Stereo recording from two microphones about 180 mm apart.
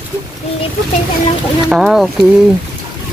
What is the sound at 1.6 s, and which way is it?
Speech, 5° right (ahead or behind).